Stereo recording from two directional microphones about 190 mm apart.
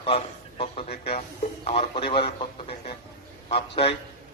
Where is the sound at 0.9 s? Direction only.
55° left (ahead or behind).